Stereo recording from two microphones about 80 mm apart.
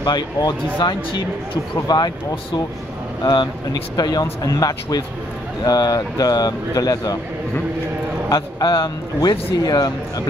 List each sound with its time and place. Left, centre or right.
0.0 s speech: left
3.7 s speech: left
8.3 s speech: left